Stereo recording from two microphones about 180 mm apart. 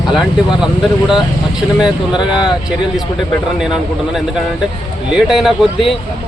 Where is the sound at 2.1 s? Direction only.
25° left (ahead or behind).